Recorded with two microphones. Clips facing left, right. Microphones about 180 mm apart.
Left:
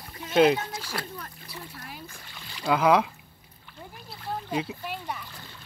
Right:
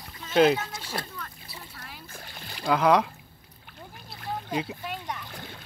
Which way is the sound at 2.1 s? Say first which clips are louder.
Right 3 dB; 50° right (ahead or behind).